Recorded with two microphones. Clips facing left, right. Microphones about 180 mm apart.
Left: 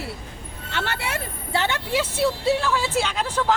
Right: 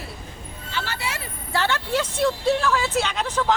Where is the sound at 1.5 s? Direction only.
20° left (ahead or behind).